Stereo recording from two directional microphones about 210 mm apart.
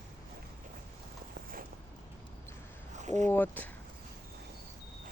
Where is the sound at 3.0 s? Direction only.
35° right (ahead or behind).